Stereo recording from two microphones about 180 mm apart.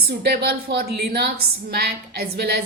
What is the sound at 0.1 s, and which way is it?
A woman's voice, 60° right (ahead or behind).